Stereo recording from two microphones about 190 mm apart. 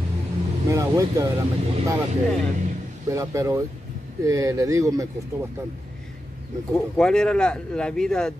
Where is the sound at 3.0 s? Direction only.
15° right (ahead or behind).